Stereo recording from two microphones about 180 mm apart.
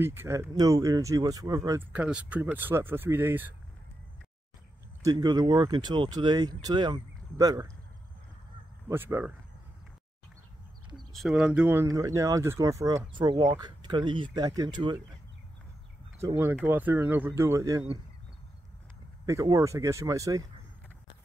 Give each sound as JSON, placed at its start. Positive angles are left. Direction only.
{"t": 0.0, "sound": "speech", "side_deg": -10}
{"t": 1.9, "sound": "speech", "side_deg": -5}
{"t": 5.0, "sound": "speech", "side_deg": -20}
{"t": 8.8, "sound": "speech", "side_deg": -10}
{"t": 11.1, "sound": "speech", "side_deg": 0}
{"t": 16.2, "sound": "speech", "side_deg": -15}
{"t": 19.2, "sound": "speech", "side_deg": -15}